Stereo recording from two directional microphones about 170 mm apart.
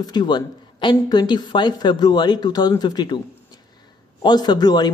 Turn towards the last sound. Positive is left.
turn(degrees=25)  # may be behind; listen again after turning